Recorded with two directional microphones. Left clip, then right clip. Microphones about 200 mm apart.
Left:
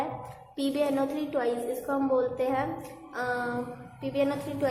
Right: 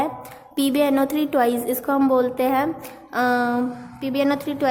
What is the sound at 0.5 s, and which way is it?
A woman's voice, 45° right (ahead or behind).